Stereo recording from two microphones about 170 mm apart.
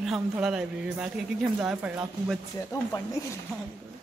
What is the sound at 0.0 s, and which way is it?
Speech, centre (ahead or behind).